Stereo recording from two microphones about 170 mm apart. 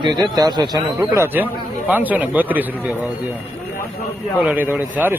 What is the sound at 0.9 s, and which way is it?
Speech, 15° right (ahead or behind).